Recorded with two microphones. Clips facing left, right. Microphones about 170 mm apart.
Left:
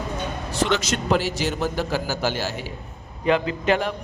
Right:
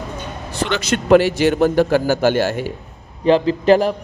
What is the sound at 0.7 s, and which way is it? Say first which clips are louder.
A man's voice: right 10 dB; 60° right (ahead or behind).